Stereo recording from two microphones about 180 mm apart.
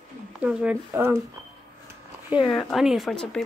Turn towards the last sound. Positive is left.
turn(degrees=0)  # may be behind; listen again after turning